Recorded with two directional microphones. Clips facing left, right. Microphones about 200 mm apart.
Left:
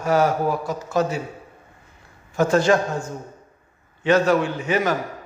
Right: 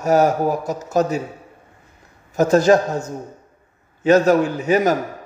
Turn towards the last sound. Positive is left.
turn(degrees=-40)  # may be behind; listen again after turning